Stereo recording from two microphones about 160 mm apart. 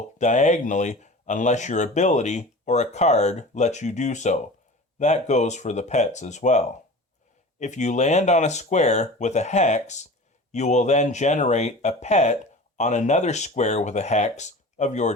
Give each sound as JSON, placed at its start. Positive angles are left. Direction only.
{"t": 0.2, "sound": "speech", "side_deg": 50}